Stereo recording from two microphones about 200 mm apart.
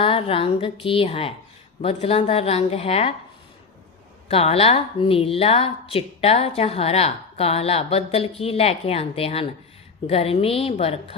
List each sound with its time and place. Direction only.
0.0 s a woman's voice: 25° left (ahead or behind)
4.3 s a woman's voice: 30° left (ahead or behind)